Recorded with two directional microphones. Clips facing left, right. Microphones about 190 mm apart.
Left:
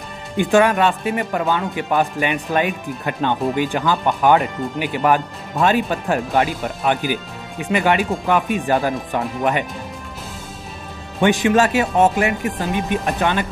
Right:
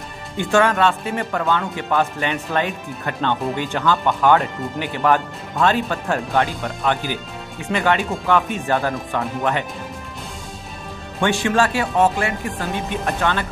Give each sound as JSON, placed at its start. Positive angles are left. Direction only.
{"t": 0.4, "sound": "speech", "side_deg": 15}
{"t": 11.1, "sound": "speech", "side_deg": 20}